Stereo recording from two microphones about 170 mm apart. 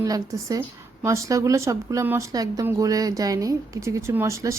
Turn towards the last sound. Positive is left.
turn(degrees=-15)  # may be behind; listen again after turning